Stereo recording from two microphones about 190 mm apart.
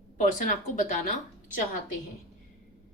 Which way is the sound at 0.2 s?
45° left (ahead or behind).